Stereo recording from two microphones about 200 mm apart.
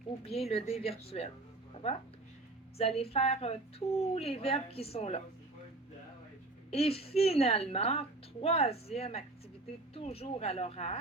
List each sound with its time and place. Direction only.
0.3 s speech: 30° left (ahead or behind)
2.7 s a woman's voice: 30° left (ahead or behind)
6.7 s a woman's voice: 30° left (ahead or behind)